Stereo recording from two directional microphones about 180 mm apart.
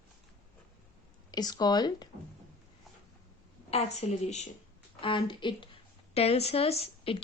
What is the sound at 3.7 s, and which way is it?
Speech, 35° left (ahead or behind).